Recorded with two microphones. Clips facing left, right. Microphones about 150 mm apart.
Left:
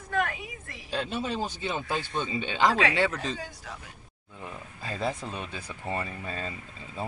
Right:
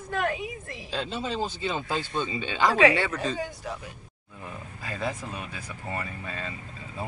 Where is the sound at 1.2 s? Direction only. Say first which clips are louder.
Right 2 dB; 10° left (ahead or behind).